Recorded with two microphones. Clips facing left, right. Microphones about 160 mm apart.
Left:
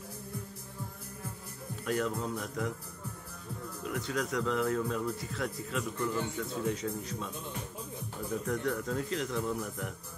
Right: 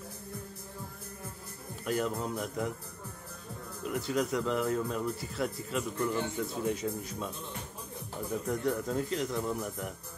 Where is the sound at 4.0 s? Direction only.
5° right (ahead or behind).